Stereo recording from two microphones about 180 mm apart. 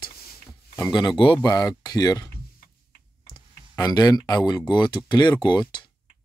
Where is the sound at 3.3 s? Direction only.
20° left (ahead or behind).